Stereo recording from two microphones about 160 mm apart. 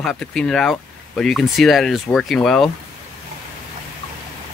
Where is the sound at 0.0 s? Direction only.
5° left (ahead or behind).